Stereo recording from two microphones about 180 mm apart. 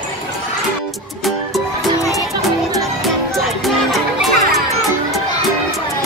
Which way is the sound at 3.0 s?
Centre (ahead or behind).